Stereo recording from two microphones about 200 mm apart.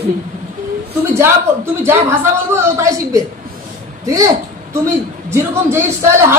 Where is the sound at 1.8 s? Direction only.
15° right (ahead or behind).